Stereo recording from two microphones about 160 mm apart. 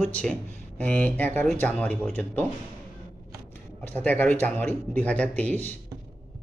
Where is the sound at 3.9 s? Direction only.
10° left (ahead or behind).